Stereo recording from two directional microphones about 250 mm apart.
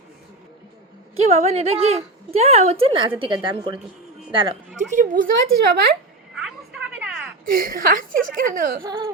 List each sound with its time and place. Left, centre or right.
1.2 s a woman's voice: right
6.9 s a sound: centre
7.4 s a woman's voice: right
8.8 s speech: centre